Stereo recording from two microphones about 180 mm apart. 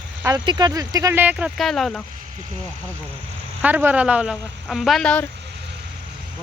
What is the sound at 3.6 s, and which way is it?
Speech, 10° right (ahead or behind).